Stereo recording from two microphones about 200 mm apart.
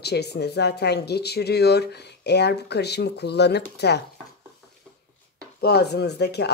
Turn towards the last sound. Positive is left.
turn(degrees=55)  # may be behind; listen again after turning